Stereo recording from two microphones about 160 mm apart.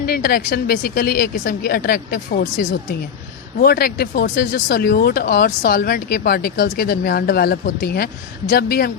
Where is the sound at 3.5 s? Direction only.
70° left (ahead or behind).